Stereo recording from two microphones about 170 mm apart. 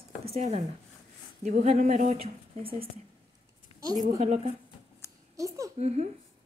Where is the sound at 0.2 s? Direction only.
35° right (ahead or behind).